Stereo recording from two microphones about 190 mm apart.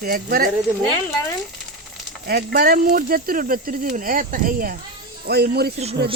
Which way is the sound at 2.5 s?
50° right (ahead or behind).